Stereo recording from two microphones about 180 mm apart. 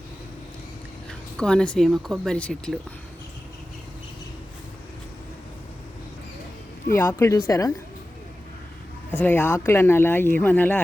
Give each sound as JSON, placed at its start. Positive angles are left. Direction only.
{"t": 1.4, "sound": "speech", "side_deg": 5}
{"t": 6.9, "sound": "speech", "side_deg": 10}
{"t": 9.1, "sound": "speech", "side_deg": 10}